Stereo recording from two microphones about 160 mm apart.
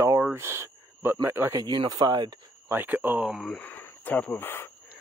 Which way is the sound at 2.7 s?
10° right (ahead or behind).